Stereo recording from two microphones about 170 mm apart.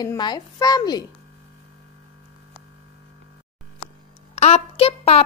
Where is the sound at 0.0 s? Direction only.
25° left (ahead or behind).